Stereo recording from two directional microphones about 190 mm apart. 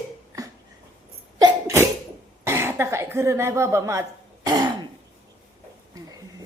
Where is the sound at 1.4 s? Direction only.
15° right (ahead or behind).